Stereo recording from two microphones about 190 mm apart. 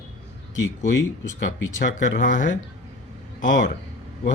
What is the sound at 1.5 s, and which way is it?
A man's voice, 75° left (ahead or behind).